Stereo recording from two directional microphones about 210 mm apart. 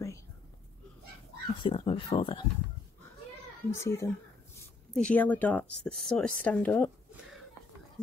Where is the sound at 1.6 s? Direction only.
25° left (ahead or behind).